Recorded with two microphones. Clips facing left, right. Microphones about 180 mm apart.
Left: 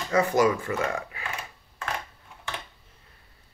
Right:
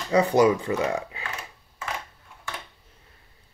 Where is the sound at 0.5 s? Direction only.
15° right (ahead or behind).